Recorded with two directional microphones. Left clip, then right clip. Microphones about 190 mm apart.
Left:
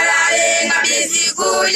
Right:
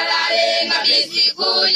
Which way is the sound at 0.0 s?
25° right (ahead or behind).